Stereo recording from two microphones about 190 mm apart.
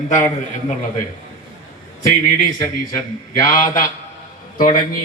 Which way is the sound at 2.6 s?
15° left (ahead or behind).